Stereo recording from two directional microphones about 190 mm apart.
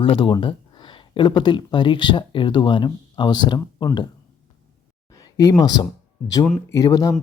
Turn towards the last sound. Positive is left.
turn(degrees=20)  # may be behind; listen again after turning